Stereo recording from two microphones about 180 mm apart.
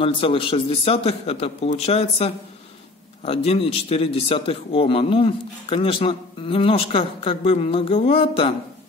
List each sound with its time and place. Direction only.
0.0 s a man's voice: 30° left (ahead or behind)